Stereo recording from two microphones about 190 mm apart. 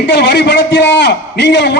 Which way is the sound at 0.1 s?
65° left (ahead or behind).